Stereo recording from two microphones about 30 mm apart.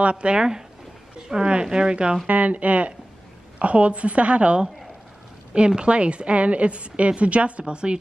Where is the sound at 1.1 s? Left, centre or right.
Right.